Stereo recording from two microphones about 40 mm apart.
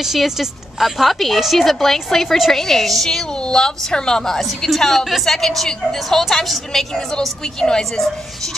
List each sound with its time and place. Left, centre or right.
0.0 s a woman's voice: centre
3.4 s a woman's voice: centre
4.4 s a woman's voice: centre
7.2 s a woman's voice: left